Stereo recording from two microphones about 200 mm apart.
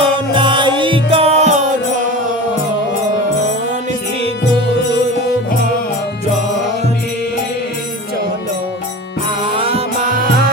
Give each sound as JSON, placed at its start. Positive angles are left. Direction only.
{"t": 0.0, "sound": "music", "side_deg": -25}
{"t": 9.6, "sound": "music", "side_deg": -30}